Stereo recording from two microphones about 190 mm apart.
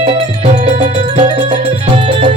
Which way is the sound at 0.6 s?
30° right (ahead or behind).